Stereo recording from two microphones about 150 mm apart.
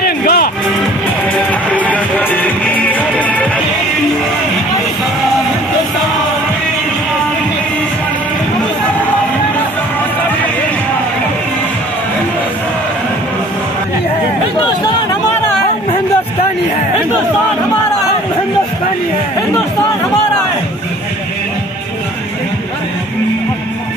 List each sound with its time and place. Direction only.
0.0 s music: 90° left
1.5 s music: 10° left (ahead or behind)